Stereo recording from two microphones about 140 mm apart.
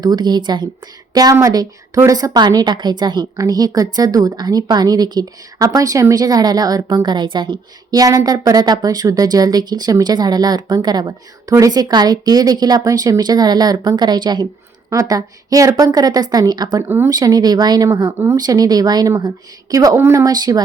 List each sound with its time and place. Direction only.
0.0 s a woman's voice: 30° right (ahead or behind)
16.7 s speech: 15° right (ahead or behind)
17.1 s a woman's voice: 25° right (ahead or behind)